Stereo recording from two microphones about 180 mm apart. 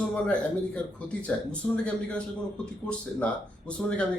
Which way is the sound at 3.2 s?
10° left (ahead or behind).